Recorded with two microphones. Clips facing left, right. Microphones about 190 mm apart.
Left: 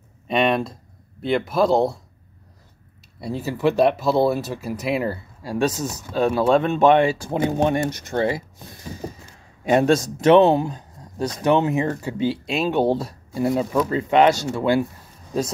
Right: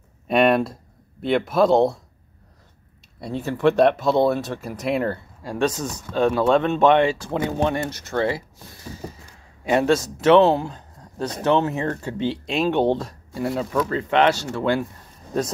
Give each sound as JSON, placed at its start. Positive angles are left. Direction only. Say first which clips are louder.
{"t": 0.3, "sound": "speech", "louder": "right 3 dB", "side_deg": -5}
{"t": 3.2, "sound": "speech", "louder": "even", "side_deg": 5}
{"t": 13.4, "sound": "speech", "louder": "left 3 dB", "side_deg": 20}